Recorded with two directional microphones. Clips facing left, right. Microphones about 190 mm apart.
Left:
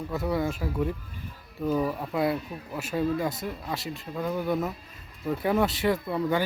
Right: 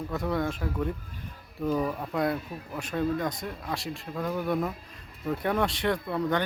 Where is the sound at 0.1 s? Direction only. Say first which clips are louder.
Left 2 dB; 5° left (ahead or behind).